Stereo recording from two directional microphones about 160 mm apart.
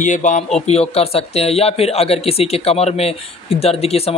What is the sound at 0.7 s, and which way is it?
A man's voice, 40° left (ahead or behind).